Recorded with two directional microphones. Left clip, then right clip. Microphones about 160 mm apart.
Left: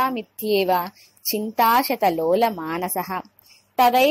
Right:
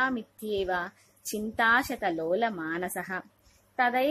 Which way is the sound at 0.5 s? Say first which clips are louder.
Left 10 dB; 15° left (ahead or behind).